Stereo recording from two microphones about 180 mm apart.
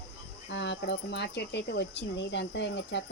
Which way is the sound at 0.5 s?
75° left (ahead or behind).